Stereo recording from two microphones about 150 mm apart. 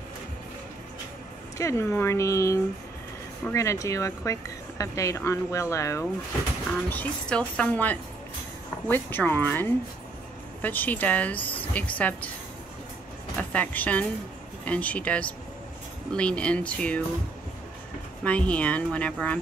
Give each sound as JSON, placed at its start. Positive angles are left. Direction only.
{"t": 1.6, "sound": "speech", "side_deg": 20}
{"t": 6.9, "sound": "speech", "side_deg": 10}
{"t": 13.4, "sound": "speech", "side_deg": 10}
{"t": 18.2, "sound": "speech", "side_deg": 10}